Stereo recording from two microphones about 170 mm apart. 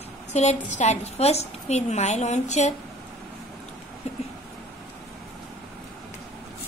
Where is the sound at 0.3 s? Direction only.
40° left (ahead or behind).